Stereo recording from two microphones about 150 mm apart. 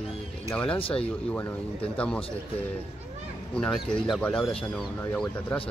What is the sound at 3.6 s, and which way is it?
Speech, 5° left (ahead or behind).